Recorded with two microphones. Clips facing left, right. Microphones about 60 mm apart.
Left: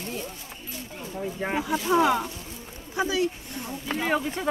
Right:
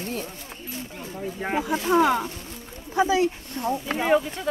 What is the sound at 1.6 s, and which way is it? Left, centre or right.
Speech, right.